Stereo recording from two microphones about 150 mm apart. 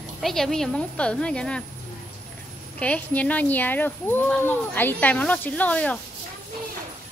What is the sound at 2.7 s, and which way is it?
Speech, 10° left (ahead or behind).